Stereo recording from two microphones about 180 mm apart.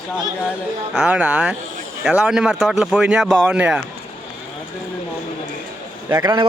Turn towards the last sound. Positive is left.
turn(degrees=-20)  # may be behind; listen again after turning